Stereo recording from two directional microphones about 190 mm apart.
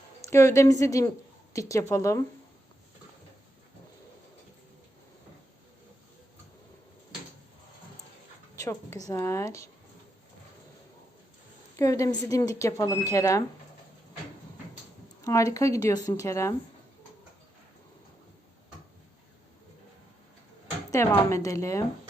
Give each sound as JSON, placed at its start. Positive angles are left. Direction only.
{"t": 0.2, "sound": "speech", "side_deg": 15}
{"t": 8.5, "sound": "speech", "side_deg": 15}
{"t": 11.8, "sound": "speech", "side_deg": 15}
{"t": 15.2, "sound": "speech", "side_deg": 15}
{"t": 20.9, "sound": "speech", "side_deg": 15}